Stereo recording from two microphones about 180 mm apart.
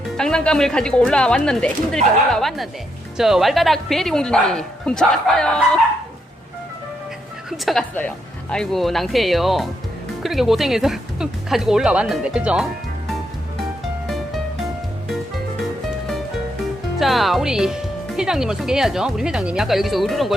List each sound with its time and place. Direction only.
0.2 s speech: 5° left (ahead or behind)
7.5 s speech: centre (ahead or behind)
17.0 s speech: centre (ahead or behind)